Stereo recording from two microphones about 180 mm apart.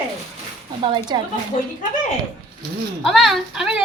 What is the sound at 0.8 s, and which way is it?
Speech, 25° right (ahead or behind).